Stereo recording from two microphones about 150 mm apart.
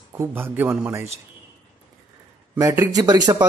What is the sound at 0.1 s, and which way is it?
A man's voice, 15° right (ahead or behind).